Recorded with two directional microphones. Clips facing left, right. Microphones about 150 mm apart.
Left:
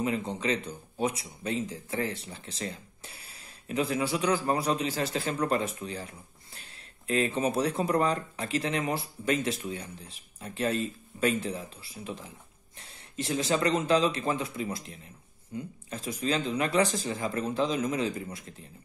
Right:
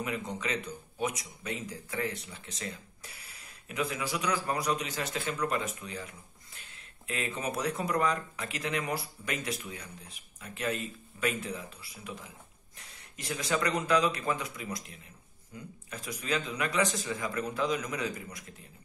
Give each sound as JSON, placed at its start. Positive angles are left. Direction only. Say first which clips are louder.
{"t": 0.0, "sound": "speech", "louder": "left 5 dB", "side_deg": 30}